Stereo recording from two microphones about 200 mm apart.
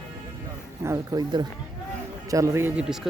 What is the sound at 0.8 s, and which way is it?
Speech, 15° right (ahead or behind).